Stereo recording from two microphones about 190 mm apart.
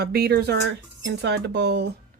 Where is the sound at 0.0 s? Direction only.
55° right (ahead or behind).